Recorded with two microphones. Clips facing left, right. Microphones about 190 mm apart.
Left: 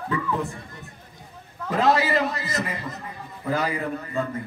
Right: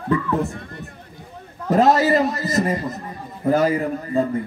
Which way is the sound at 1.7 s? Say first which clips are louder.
Right 5 dB; 45° right (ahead or behind).